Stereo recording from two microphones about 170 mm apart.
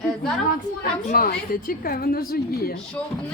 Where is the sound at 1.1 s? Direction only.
55° left (ahead or behind).